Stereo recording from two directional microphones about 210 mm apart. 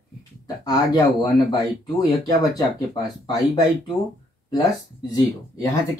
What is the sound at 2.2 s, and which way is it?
Speech, 20° left (ahead or behind).